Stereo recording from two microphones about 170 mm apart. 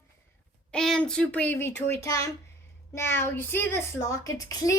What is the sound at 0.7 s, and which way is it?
A child's voice, 5° left (ahead or behind).